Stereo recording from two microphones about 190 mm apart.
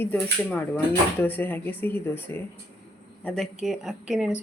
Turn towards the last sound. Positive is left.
turn(degrees=-5)  # may be behind; listen again after turning